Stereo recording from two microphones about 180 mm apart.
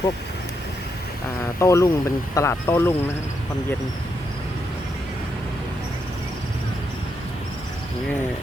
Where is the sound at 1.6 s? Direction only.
15° left (ahead or behind).